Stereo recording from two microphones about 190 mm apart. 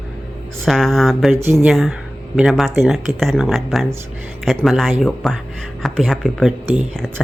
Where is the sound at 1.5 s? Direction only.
Centre (ahead or behind).